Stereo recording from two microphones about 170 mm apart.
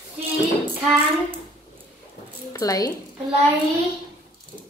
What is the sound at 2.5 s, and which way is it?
Speech, 20° left (ahead or behind).